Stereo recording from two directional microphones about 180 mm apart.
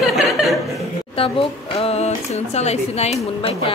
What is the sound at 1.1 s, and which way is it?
Speech, 30° left (ahead or behind).